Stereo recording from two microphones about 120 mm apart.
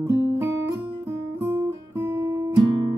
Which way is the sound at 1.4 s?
25° right (ahead or behind).